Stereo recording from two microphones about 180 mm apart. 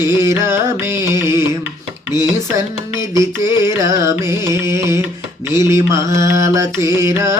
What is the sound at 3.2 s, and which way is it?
Mantra, 15° right (ahead or behind).